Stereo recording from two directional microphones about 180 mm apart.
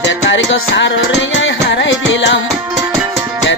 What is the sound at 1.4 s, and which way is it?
Music, 90° left.